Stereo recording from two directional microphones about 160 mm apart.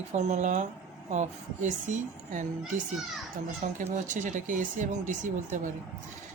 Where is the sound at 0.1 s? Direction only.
45° right (ahead or behind).